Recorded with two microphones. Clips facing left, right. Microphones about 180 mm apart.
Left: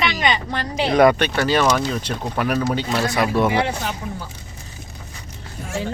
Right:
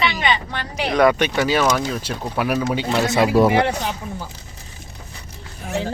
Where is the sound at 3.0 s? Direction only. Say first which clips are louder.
Right 4 dB; 25° right (ahead or behind).